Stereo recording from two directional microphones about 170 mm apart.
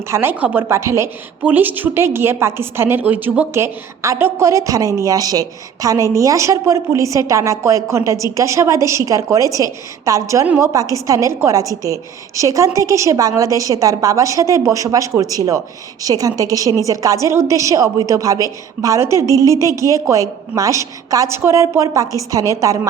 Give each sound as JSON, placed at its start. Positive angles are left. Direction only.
{"t": 0.1, "sound": "a woman's voice", "side_deg": -15}